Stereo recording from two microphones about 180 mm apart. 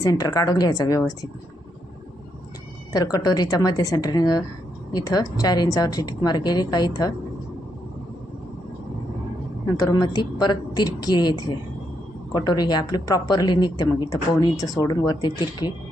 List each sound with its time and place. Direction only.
0.0 s speech: 20° left (ahead or behind)
2.9 s speech: 20° left (ahead or behind)
9.7 s speech: 20° left (ahead or behind)